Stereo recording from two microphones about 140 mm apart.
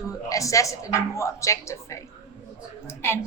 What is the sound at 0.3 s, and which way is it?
A woman's voice, 25° left (ahead or behind).